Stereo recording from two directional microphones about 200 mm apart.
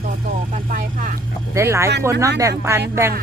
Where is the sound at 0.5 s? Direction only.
40° right (ahead or behind).